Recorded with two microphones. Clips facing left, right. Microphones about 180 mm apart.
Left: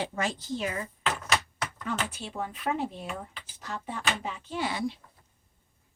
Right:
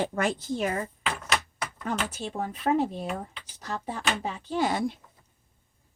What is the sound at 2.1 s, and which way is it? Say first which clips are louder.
Speech: right 3 dB; 40° right (ahead or behind).